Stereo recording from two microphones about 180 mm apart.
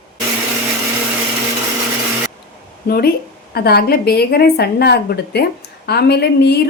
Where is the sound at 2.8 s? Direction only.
60° left (ahead or behind).